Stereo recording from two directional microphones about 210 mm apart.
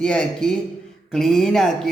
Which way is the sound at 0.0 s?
5° left (ahead or behind).